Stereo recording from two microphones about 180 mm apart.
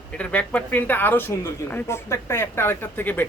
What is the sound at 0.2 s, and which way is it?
Speech, 5° left (ahead or behind).